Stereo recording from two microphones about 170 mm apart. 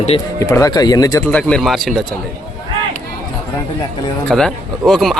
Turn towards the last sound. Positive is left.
turn(degrees=0)  # may be behind; listen again after turning